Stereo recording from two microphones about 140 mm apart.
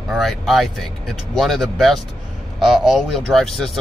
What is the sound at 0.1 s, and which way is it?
Speech, centre (ahead or behind).